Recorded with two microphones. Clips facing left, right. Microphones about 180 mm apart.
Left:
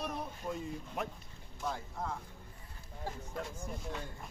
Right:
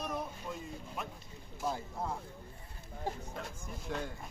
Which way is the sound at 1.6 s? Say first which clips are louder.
Right 2 dB; 5° right (ahead or behind).